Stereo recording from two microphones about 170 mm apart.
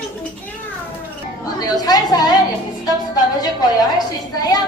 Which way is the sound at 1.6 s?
25° left (ahead or behind).